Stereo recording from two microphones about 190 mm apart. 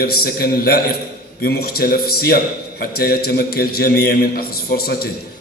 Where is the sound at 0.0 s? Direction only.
55° left (ahead or behind).